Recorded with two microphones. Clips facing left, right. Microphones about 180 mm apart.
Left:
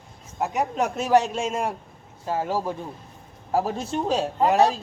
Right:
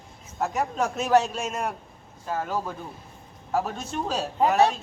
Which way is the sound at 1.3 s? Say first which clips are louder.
Left 3 dB; 25° left (ahead or behind).